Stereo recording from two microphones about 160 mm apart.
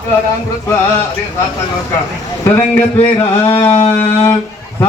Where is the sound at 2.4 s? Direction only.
15° left (ahead or behind).